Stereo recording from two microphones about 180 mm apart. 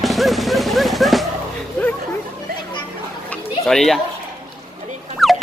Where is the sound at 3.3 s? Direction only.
Centre (ahead or behind).